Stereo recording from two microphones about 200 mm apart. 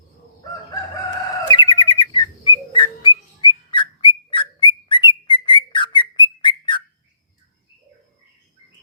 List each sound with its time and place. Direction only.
1.5 s bird: 25° left (ahead or behind)